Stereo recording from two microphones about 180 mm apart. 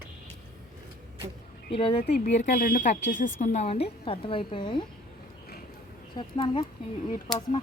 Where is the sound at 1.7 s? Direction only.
30° left (ahead or behind).